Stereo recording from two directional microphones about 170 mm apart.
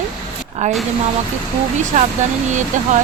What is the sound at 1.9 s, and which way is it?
Speech, 45° right (ahead or behind).